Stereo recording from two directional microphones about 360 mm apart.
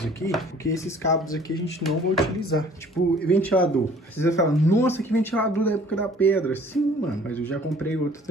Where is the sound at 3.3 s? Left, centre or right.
Centre.